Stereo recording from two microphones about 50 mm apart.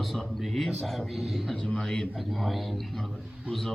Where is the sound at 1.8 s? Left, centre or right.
Centre.